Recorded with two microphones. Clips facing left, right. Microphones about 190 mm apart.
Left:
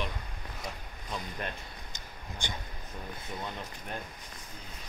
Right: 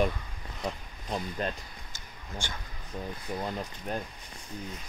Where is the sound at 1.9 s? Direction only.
20° left (ahead or behind).